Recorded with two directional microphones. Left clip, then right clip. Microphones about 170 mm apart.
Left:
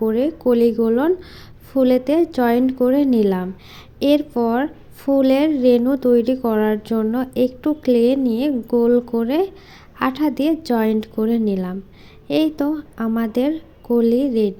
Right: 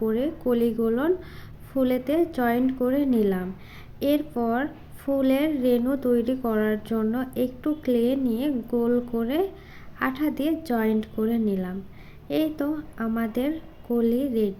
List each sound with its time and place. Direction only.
0.0 s a woman's voice: 30° left (ahead or behind)